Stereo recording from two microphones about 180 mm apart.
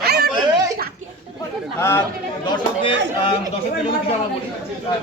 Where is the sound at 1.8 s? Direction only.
15° left (ahead or behind).